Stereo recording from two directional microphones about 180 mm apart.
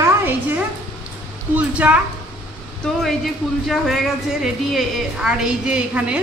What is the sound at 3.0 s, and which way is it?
Speech, centre (ahead or behind).